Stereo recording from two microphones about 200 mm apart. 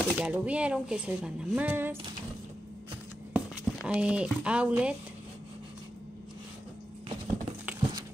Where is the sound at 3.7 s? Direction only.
5° right (ahead or behind).